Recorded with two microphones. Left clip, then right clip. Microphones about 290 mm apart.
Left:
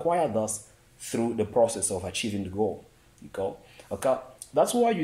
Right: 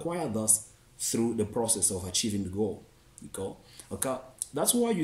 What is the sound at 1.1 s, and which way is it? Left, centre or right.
Speech, centre.